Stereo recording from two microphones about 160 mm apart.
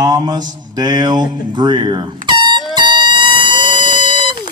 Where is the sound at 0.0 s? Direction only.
25° right (ahead or behind).